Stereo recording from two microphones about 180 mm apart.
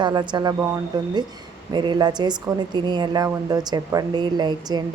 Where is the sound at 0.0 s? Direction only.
25° right (ahead or behind).